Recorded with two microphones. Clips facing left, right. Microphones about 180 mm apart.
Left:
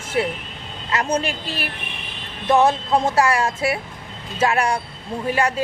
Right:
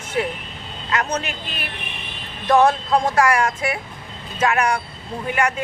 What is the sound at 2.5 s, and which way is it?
Speech, 25° left (ahead or behind).